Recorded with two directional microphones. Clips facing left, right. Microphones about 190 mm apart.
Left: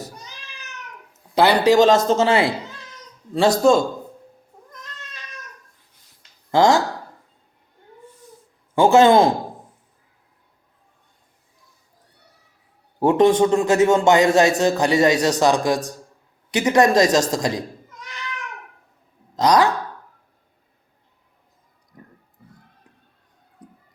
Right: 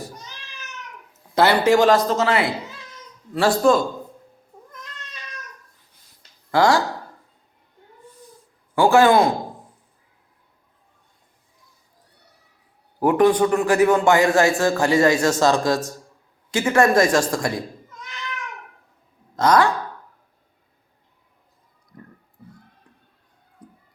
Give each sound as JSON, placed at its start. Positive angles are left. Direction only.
{"t": 1.4, "sound": "a man's voice", "side_deg": 15}
{"t": 3.6, "sound": "a man's voice", "side_deg": 25}
{"t": 6.5, "sound": "a man's voice", "side_deg": 25}
{"t": 8.7, "sound": "a man's voice", "side_deg": 20}
{"t": 13.0, "sound": "a man's voice", "side_deg": 25}
{"t": 19.4, "sound": "a man's voice", "side_deg": 20}